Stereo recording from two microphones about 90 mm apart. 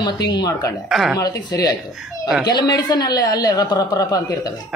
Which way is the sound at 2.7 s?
50° left (ahead or behind).